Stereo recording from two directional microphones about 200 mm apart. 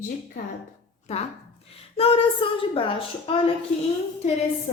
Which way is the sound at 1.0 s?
35° left (ahead or behind).